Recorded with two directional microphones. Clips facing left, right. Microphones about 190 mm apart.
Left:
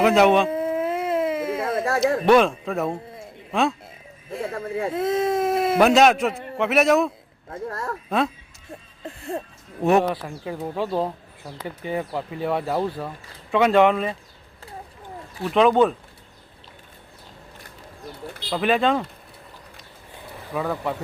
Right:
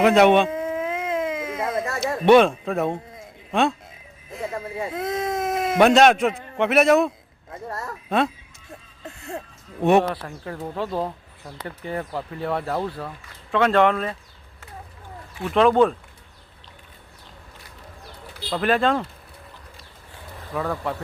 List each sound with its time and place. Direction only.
0.0 s a man's voice: centre (ahead or behind)
0.5 s baby cry: 35° left (ahead or behind)
2.2 s a man's voice: centre (ahead or behind)
4.9 s speech: 30° left (ahead or behind)
5.7 s a man's voice: centre (ahead or behind)
7.5 s speech: 55° left (ahead or behind)
9.0 s speech: 35° left (ahead or behind)
9.8 s speech: 5° left (ahead or behind)
15.4 s a man's voice: centre (ahead or behind)
18.5 s a man's voice: 5° left (ahead or behind)
20.5 s speech: 10° left (ahead or behind)